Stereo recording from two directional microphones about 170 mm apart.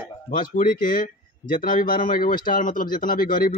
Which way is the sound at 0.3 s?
55° left (ahead or behind).